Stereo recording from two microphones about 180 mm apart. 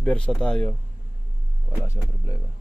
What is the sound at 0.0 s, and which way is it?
Speech, 5° left (ahead or behind).